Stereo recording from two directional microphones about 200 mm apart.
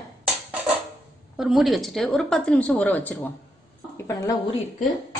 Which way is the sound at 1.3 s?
Centre (ahead or behind).